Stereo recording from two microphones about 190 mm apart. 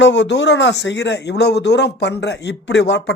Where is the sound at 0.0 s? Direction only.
70° left (ahead or behind).